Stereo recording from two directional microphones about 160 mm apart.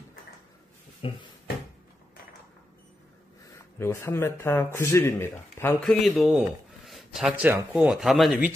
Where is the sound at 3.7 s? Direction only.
15° left (ahead or behind).